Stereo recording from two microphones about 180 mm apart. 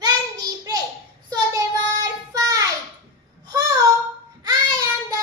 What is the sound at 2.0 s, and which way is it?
Child singing, 20° right (ahead or behind).